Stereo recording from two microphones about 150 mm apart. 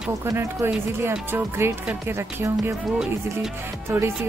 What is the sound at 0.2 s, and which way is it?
Speech, 20° right (ahead or behind).